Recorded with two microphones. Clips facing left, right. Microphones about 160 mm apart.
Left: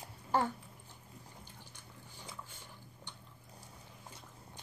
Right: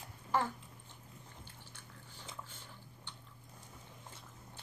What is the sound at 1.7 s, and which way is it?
Dog, 15° left (ahead or behind).